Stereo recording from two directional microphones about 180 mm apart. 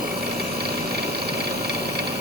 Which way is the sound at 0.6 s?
60° right (ahead or behind).